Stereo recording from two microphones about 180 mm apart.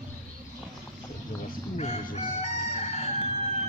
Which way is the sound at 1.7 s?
35° left (ahead or behind).